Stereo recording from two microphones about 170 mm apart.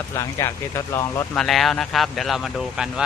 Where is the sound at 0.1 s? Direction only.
15° left (ahead or behind).